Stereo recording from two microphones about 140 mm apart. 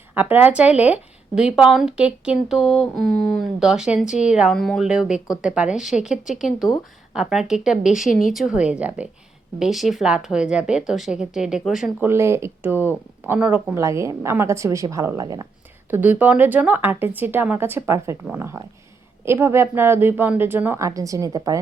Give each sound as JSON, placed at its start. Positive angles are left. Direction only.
{"t": 0.1, "sound": "speech", "side_deg": -10}
{"t": 4.0, "sound": "speech", "side_deg": 60}
{"t": 4.3, "sound": "speech", "side_deg": -5}
{"t": 12.0, "sound": "speech", "side_deg": -20}
{"t": 13.7, "sound": "a woman's voice", "side_deg": -20}
{"t": 15.9, "sound": "speech", "side_deg": -10}